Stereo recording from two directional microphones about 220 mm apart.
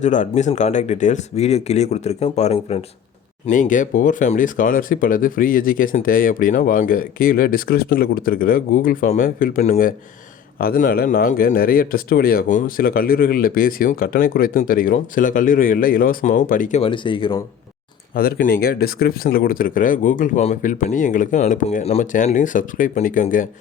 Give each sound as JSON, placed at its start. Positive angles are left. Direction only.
{"t": 0.0, "sound": "speech", "side_deg": 35}
{"t": 18.1, "sound": "speech", "side_deg": 40}